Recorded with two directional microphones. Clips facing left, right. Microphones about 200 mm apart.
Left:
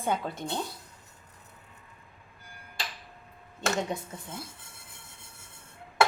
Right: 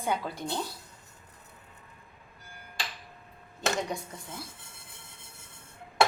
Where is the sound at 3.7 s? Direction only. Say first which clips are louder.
Left 1 dB; centre (ahead or behind).